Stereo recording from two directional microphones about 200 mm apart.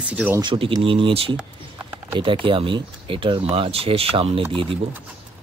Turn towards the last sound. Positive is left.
turn(degrees=-25)  # may be behind; listen again after turning